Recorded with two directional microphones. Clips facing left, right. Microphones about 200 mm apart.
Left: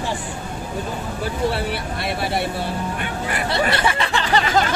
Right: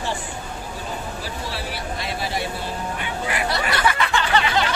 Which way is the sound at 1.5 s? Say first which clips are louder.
Left 5 dB; 60° left (ahead or behind).